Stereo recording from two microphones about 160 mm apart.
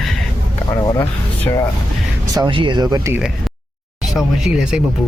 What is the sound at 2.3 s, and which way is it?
Speech, 30° right (ahead or behind).